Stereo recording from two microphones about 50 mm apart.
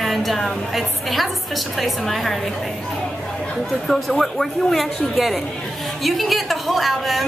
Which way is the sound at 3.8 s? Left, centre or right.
Centre.